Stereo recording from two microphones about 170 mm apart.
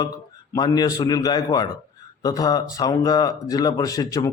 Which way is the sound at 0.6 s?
25° left (ahead or behind).